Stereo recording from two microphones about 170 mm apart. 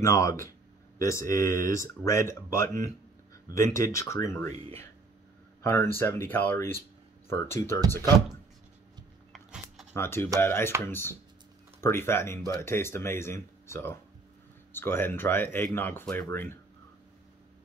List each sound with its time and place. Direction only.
0.0 s speech: 15° left (ahead or behind)
5.6 s speech: 15° left (ahead or behind)
9.3 s a sound: centre (ahead or behind)
9.9 s speech: 15° left (ahead or behind)